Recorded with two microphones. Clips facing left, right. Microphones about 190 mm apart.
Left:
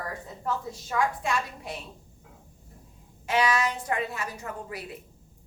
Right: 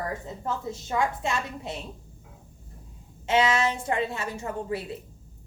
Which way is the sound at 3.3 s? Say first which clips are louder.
Right 2 dB; 25° right (ahead or behind).